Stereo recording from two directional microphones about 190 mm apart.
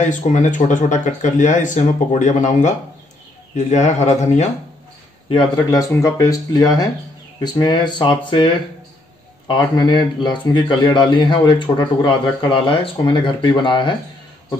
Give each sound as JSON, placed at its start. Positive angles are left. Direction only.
{"t": 0.1, "sound": "speech", "side_deg": 40}
{"t": 5.3, "sound": "speech", "side_deg": 20}
{"t": 9.5, "sound": "speech", "side_deg": 25}